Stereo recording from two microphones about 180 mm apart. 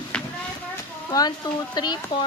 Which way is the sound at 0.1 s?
5° left (ahead or behind).